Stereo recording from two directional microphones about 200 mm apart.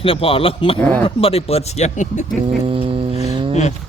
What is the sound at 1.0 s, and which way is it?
Speech, 30° left (ahead or behind).